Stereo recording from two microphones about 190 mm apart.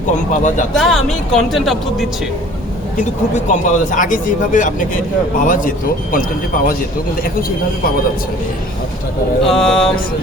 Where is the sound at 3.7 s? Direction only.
40° left (ahead or behind).